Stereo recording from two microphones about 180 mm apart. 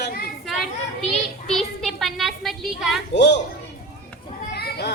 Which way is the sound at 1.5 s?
Centre (ahead or behind).